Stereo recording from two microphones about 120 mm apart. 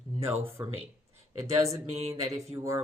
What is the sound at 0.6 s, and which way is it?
Speech, 20° right (ahead or behind).